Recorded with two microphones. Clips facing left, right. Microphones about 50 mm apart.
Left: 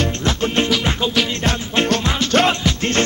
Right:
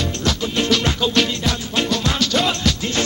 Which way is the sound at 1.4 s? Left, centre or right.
Left.